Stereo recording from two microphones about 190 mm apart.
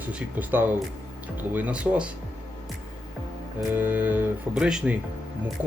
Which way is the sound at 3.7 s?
10° right (ahead or behind).